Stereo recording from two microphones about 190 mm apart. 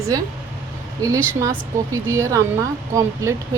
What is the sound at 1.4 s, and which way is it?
A woman's voice, 15° right (ahead or behind).